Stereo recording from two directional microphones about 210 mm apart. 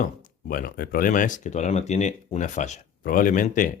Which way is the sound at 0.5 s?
45° left (ahead or behind).